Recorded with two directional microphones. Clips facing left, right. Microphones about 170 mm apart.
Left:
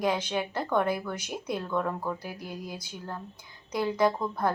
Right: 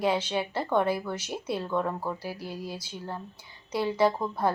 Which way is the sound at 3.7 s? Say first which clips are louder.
Right 1 dB; 10° right (ahead or behind).